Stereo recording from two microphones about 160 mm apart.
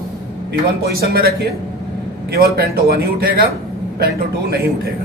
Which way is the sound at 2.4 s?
75° right (ahead or behind).